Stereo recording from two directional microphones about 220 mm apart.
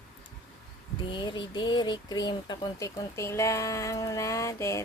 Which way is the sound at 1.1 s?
20° left (ahead or behind).